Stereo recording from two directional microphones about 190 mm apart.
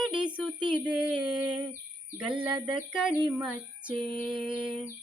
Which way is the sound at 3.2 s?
5° right (ahead or behind).